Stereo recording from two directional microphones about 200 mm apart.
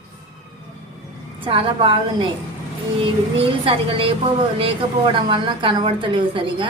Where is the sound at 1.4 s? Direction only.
25° right (ahead or behind).